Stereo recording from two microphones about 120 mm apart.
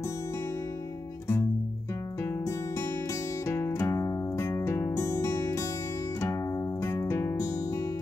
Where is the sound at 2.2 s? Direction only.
25° left (ahead or behind).